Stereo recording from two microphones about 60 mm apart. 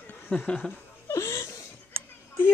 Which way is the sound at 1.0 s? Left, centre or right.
Left.